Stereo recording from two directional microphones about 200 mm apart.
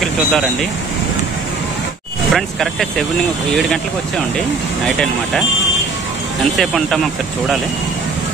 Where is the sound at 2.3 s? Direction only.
Centre (ahead or behind).